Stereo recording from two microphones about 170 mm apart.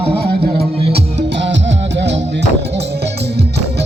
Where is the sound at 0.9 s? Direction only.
80° right.